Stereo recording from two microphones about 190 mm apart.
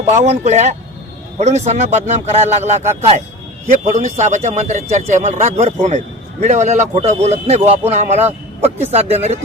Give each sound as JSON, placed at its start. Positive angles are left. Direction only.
{"t": 0.2, "sound": "speech", "side_deg": -35}